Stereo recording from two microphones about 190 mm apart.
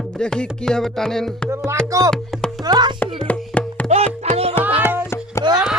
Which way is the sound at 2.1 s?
Centre (ahead or behind).